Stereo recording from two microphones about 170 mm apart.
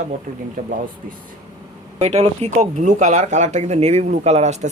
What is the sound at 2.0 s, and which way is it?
Speech, 40° right (ahead or behind).